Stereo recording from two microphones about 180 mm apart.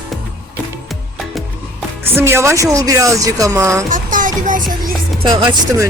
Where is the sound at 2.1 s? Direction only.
15° right (ahead or behind).